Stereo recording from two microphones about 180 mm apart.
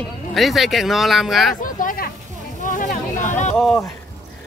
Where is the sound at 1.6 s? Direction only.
50° left (ahead or behind).